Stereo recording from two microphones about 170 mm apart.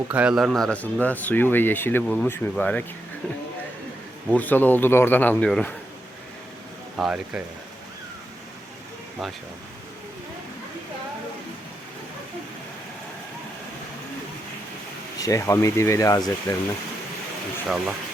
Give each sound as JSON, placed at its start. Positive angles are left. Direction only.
{"t": 0.1, "sound": "speech", "side_deg": -5}
{"t": 4.3, "sound": "speech", "side_deg": 10}
{"t": 6.9, "sound": "speech", "side_deg": -5}
{"t": 15.2, "sound": "speech", "side_deg": 20}
{"t": 17.7, "sound": "speech", "side_deg": -5}